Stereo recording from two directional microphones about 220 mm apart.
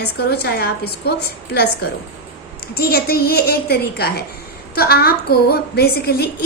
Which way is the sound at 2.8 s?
45° left (ahead or behind).